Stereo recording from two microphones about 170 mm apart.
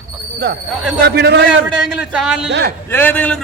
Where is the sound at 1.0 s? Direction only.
75° right (ahead or behind).